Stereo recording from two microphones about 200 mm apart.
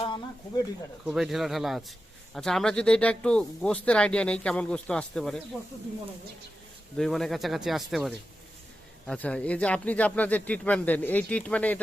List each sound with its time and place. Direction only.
0.0 s a sound: 25° left (ahead or behind)
1.0 s speech: centre (ahead or behind)
6.9 s speech: centre (ahead or behind)